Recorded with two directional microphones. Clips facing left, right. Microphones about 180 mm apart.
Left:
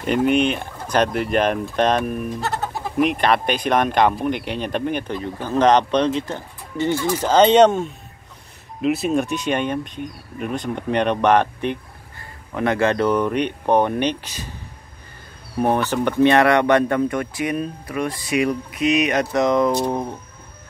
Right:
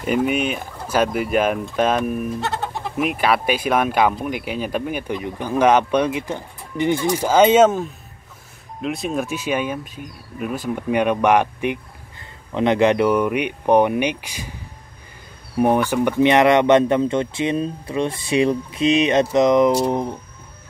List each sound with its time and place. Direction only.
0.0 s speech: 5° right (ahead or behind)
15.6 s speech: 10° right (ahead or behind)